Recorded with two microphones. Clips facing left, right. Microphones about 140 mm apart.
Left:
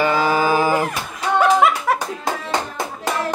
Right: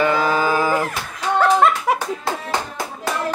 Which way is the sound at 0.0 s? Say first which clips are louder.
Left 1 dB; 5° left (ahead or behind).